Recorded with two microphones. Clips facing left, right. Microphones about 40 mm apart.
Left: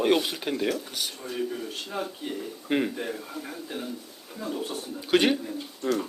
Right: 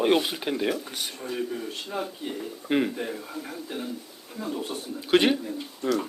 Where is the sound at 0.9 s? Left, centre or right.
Right.